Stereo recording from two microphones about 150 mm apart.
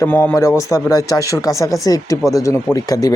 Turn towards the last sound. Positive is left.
turn(degrees=25)  # may be behind; listen again after turning